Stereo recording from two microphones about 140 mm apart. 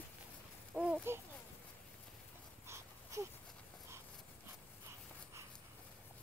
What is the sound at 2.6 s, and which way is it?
Baby cry, 20° right (ahead or behind).